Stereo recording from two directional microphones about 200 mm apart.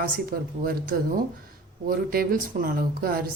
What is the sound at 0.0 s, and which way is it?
Speech, 50° right (ahead or behind).